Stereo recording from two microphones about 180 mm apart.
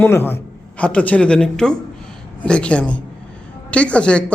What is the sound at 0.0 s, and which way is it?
A man's voice, 10° left (ahead or behind).